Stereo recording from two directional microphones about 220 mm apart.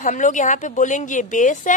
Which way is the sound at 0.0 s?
35° left (ahead or behind).